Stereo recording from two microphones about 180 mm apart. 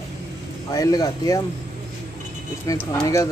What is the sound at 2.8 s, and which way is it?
Speech, 15° left (ahead or behind).